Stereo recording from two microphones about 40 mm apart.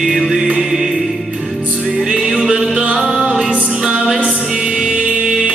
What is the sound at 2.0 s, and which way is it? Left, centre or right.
Music, centre.